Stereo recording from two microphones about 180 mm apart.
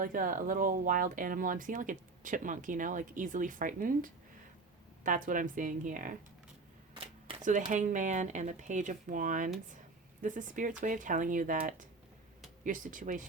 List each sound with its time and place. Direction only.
0.0 s speech: 50° right (ahead or behind)
6.9 s camera: 30° right (ahead or behind)
7.7 s speech: 45° right (ahead or behind)